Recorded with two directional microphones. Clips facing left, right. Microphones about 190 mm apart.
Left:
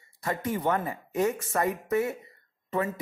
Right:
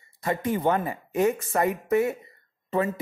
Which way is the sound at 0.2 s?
20° right (ahead or behind).